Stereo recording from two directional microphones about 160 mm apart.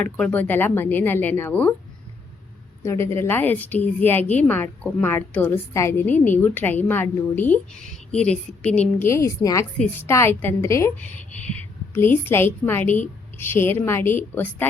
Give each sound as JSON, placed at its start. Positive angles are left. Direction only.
{"t": 0.0, "sound": "a woman's voice", "side_deg": 10}
{"t": 2.8, "sound": "a woman's voice", "side_deg": 20}